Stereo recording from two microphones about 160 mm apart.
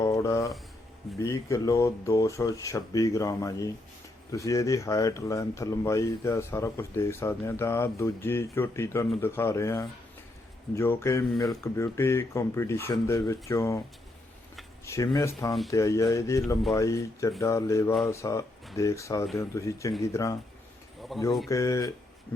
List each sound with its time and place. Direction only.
0.0 s a sound: 20° left (ahead or behind)
1.2 s speech: 20° left (ahead or behind)
14.8 s speech: 20° left (ahead or behind)
21.1 s speech: centre (ahead or behind)
21.5 s speech: 20° left (ahead or behind)